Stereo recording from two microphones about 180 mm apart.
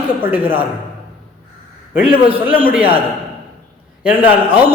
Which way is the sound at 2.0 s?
30° right (ahead or behind).